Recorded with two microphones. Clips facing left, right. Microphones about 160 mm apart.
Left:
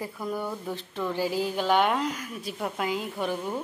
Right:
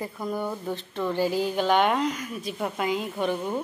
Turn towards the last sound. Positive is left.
turn(degrees=5)  # may be behind; listen again after turning